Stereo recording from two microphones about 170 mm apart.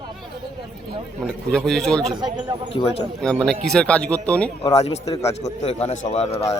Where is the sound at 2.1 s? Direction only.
25° right (ahead or behind).